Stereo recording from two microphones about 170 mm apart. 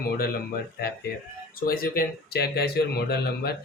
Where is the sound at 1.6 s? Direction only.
60° left (ahead or behind).